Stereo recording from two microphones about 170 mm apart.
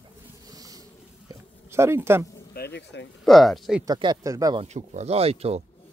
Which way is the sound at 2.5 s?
75° left (ahead or behind).